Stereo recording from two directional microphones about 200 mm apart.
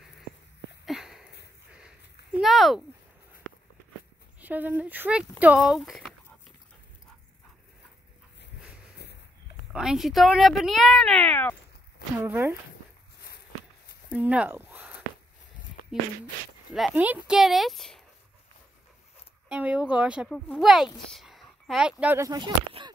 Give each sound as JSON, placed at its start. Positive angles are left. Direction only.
{"t": 0.8, "sound": "a sound", "side_deg": 0}
{"t": 2.3, "sound": "a sound", "side_deg": 0}
{"t": 4.4, "sound": "speech", "side_deg": -10}
{"t": 9.7, "sound": "speech", "side_deg": -5}
{"t": 12.2, "sound": "speech", "side_deg": -10}
{"t": 14.1, "sound": "a sound", "side_deg": -5}
{"t": 16.7, "sound": "speech", "side_deg": -5}
{"t": 19.5, "sound": "speech", "side_deg": -5}
{"t": 22.0, "sound": "speech", "side_deg": -15}